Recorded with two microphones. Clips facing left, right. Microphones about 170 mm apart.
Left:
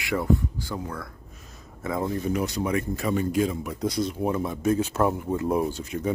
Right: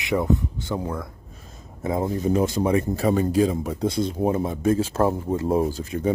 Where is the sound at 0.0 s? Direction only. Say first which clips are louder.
Right 2 dB; 20° right (ahead or behind).